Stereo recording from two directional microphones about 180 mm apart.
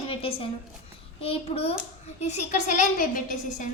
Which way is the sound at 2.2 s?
45° left (ahead or behind).